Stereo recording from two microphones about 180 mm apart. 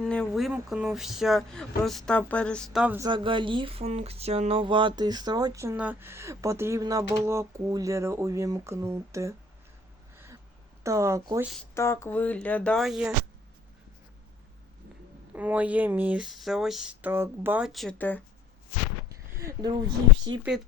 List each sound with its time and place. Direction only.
0.0 s speech: 5° left (ahead or behind)
3.0 s speech: 25° right (ahead or behind)
10.8 s speech: 15° right (ahead or behind)
11.7 s speech: 15° left (ahead or behind); by 13.1 s centre (ahead or behind)
15.3 s speech: 10° right (ahead or behind); by 18.2 s 10° left (ahead or behind)
19.0 s a sound: 20° right (ahead or behind)